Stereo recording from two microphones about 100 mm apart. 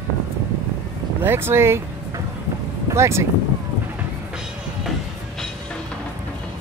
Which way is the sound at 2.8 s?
30° right (ahead or behind).